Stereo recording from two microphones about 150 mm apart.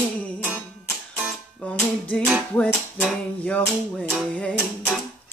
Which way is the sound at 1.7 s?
5° left (ahead or behind).